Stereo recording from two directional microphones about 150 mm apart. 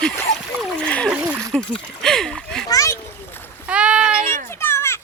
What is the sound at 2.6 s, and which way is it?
Splash, 20° left (ahead or behind).